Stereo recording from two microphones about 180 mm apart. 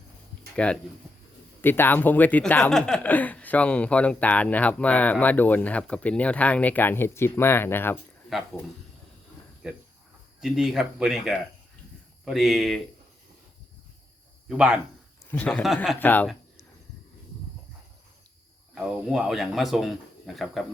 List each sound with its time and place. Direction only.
0.5 s speech: 5° left (ahead or behind)
8.3 s speech: centre (ahead or behind)
10.4 s speech: centre (ahead or behind)
14.5 s speech: 5° right (ahead or behind)
15.3 s speech: 10° left (ahead or behind)
16.0 s speech: 10° left (ahead or behind)
18.7 s speech: 5° right (ahead or behind)